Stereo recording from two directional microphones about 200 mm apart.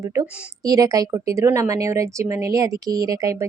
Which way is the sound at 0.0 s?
15° right (ahead or behind).